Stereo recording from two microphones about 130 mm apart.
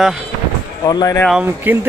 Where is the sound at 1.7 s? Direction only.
15° right (ahead or behind).